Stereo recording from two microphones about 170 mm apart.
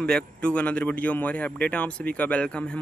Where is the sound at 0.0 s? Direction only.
5° left (ahead or behind).